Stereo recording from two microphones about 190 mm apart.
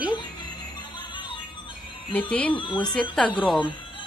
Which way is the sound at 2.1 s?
5° left (ahead or behind).